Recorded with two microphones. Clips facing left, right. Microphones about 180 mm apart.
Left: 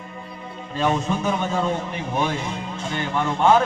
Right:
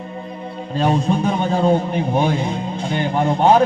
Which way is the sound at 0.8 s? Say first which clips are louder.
Right 4 dB; 35° right (ahead or behind).